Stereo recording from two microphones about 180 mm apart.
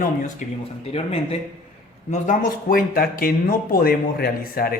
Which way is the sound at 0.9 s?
35° left (ahead or behind).